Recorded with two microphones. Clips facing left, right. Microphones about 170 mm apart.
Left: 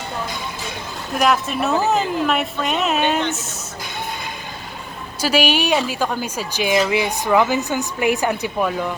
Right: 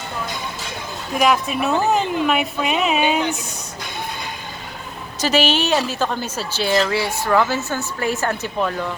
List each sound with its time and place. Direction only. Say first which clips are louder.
1.1 s a woman's voice: even; centre (ahead or behind)
5.2 s a woman's voice: even; 10° left (ahead or behind)